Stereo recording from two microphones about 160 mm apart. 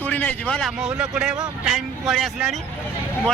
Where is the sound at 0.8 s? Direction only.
5° right (ahead or behind).